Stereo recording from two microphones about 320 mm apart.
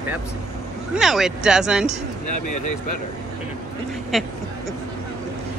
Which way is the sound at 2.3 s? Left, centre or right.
Left.